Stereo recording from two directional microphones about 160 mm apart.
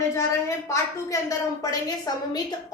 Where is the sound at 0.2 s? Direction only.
20° left (ahead or behind).